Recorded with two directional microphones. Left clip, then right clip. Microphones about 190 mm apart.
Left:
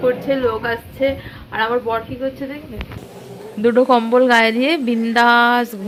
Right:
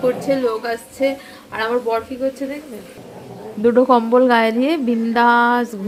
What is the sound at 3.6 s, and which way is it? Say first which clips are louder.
A woman's voice: even; 5° right (ahead or behind).